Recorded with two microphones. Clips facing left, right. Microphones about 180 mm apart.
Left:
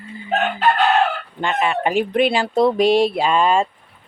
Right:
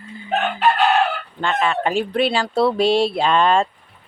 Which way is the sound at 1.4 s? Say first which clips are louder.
Even; 15° left (ahead or behind).